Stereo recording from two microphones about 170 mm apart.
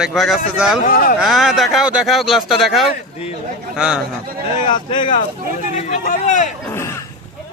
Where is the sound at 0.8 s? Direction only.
55° left (ahead or behind).